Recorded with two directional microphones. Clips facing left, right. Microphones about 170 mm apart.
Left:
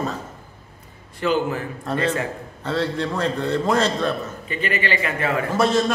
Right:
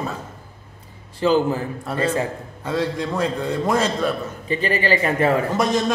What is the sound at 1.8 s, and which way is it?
A man's voice, 5° right (ahead or behind).